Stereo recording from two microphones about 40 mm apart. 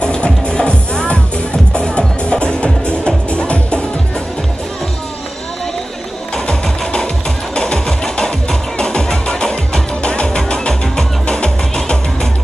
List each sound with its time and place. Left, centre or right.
0.0 s music: left
7.5 s music: left